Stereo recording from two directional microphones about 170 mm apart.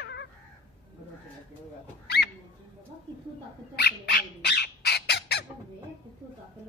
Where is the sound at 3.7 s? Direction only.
80° left.